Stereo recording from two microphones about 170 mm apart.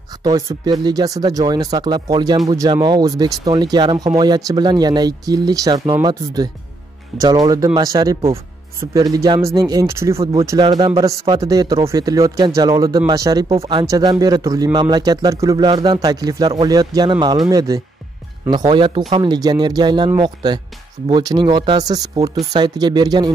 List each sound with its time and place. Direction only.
0.2 s speech: 25° right (ahead or behind)
13.5 s speech: 30° right (ahead or behind)